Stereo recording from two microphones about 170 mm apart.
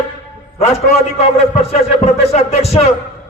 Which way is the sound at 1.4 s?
40° left (ahead or behind).